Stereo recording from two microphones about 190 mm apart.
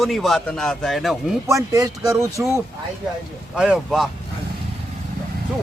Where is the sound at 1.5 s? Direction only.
15° right (ahead or behind).